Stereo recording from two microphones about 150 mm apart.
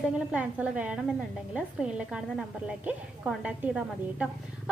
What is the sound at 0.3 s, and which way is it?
A woman's voice, 5° right (ahead or behind).